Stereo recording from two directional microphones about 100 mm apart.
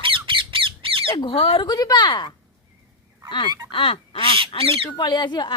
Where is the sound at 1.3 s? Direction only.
80° left.